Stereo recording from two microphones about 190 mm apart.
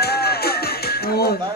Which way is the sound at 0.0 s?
55° left (ahead or behind).